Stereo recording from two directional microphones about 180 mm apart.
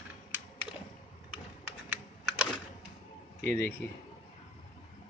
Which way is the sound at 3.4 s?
15° left (ahead or behind).